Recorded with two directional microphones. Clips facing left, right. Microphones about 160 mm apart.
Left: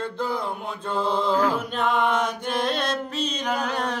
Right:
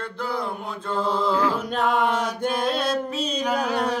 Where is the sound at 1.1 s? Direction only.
20° left (ahead or behind).